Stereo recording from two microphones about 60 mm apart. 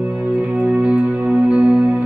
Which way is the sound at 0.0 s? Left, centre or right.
Right.